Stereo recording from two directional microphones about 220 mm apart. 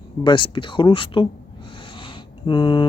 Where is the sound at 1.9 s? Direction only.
20° left (ahead or behind).